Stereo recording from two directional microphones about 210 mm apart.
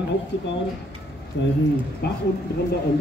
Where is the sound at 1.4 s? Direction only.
55° left (ahead or behind).